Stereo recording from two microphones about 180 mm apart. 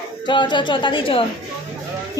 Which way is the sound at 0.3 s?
25° left (ahead or behind).